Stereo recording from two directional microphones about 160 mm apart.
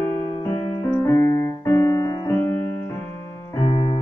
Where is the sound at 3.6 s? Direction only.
35° left (ahead or behind).